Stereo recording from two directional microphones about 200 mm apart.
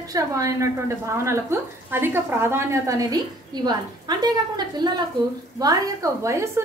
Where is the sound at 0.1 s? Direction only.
15° right (ahead or behind).